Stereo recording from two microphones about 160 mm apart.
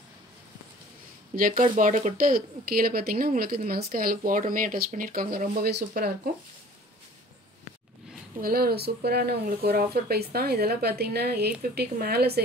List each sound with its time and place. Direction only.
1.3 s speech: 60° right (ahead or behind); by 6.1 s 85° right
8.4 s speech: 70° right (ahead or behind); by 12.3 s 85° right